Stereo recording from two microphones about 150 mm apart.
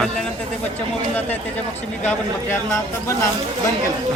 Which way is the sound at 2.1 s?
15° left (ahead or behind).